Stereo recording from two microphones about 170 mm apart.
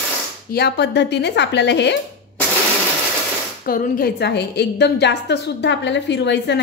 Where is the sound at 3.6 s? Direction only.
55° left (ahead or behind); by 6.6 s 90° left.